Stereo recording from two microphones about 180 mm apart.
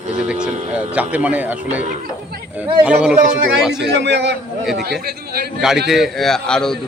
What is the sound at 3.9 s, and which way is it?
A man's voice, 70° right (ahead or behind).